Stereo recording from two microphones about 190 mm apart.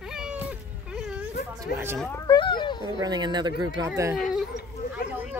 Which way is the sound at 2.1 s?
20° left (ahead or behind).